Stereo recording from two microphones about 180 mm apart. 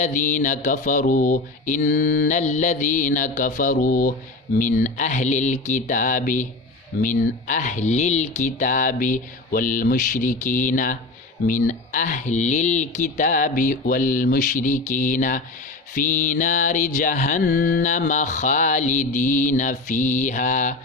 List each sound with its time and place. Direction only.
0.0 s mantra: 45° left (ahead or behind)